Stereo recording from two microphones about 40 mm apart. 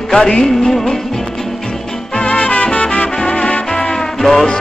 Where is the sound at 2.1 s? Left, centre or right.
Left.